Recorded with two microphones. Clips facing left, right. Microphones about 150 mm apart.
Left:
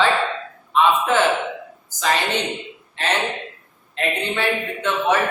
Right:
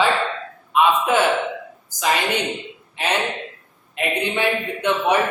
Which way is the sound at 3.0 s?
15° right (ahead or behind).